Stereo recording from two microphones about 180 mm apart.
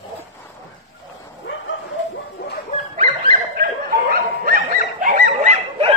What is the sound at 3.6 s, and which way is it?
Dog, 55° right (ahead or behind).